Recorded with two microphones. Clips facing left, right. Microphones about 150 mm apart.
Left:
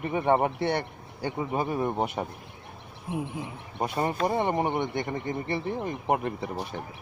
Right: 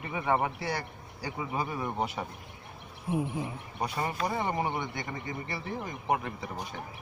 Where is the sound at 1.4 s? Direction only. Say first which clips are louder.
Left 5 dB; 35° left (ahead or behind).